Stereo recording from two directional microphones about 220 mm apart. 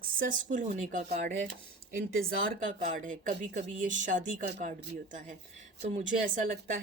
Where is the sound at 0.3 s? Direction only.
35° right (ahead or behind).